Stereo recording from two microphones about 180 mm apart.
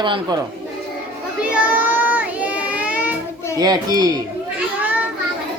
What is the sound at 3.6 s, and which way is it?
Speech, 20° right (ahead or behind).